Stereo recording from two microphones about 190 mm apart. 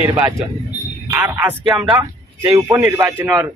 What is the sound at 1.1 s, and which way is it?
Speech, 10° right (ahead or behind).